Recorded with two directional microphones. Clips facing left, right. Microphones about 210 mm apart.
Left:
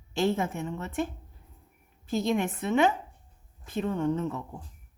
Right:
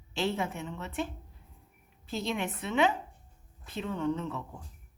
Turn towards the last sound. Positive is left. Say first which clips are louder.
# left 4 dB
turn(degrees=50)  # may be behind; listen again after turning